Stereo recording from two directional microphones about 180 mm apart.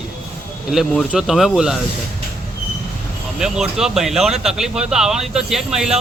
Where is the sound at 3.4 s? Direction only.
5° right (ahead or behind).